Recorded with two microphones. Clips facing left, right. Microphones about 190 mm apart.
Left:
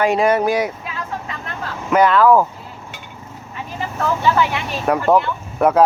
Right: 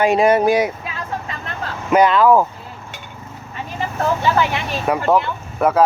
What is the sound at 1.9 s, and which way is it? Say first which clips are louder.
Speech: even; 20° right (ahead or behind).